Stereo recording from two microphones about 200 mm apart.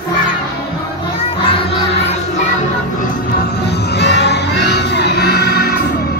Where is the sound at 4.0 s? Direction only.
60° left (ahead or behind).